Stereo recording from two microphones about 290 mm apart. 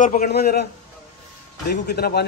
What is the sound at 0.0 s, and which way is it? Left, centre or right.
Speech, left.